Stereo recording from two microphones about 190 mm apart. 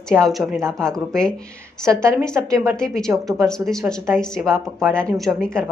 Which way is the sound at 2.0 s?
15° right (ahead or behind).